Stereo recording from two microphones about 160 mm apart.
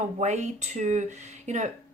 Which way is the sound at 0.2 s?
45° right (ahead or behind).